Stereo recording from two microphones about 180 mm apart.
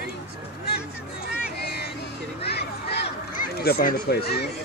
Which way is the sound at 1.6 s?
60° left (ahead or behind).